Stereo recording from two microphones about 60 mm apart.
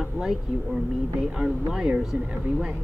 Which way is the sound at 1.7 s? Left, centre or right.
Centre.